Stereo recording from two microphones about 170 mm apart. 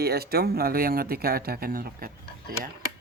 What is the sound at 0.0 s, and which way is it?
Speech, 65° right (ahead or behind).